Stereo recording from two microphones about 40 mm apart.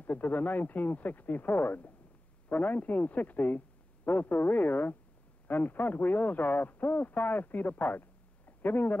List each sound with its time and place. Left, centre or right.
0.0 s speech: left